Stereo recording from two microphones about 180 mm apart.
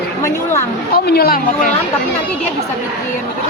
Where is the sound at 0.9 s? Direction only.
60° left (ahead or behind).